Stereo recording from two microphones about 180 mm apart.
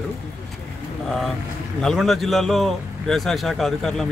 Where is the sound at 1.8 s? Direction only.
Centre (ahead or behind).